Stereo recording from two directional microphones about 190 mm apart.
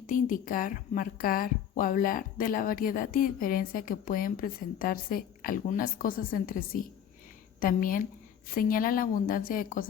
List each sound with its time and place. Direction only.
0.1 s speech: 45° left (ahead or behind)